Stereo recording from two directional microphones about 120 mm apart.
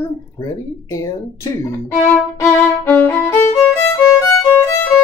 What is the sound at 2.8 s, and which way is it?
Violin, 15° left (ahead or behind).